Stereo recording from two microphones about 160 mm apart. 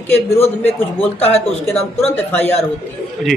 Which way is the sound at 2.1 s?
10° left (ahead or behind).